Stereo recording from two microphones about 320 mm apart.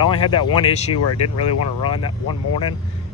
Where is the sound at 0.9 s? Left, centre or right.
Left.